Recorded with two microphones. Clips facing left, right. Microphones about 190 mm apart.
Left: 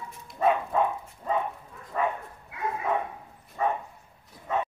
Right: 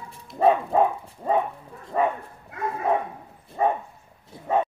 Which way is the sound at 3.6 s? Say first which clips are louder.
Right 5 dB; 30° right (ahead or behind).